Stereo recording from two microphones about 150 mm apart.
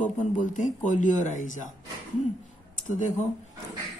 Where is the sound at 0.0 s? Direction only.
55° left (ahead or behind).